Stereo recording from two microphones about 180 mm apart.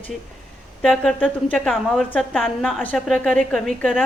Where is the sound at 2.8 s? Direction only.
5° left (ahead or behind).